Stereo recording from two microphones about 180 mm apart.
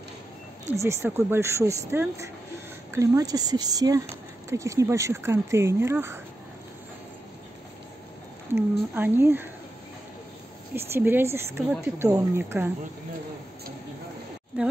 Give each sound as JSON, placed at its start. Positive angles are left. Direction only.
{"t": 0.7, "sound": "speech", "side_deg": -15}
{"t": 8.5, "sound": "speech", "side_deg": -10}
{"t": 10.7, "sound": "speech", "side_deg": -10}